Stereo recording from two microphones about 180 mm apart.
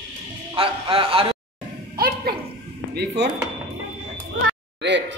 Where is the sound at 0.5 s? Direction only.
30° right (ahead or behind).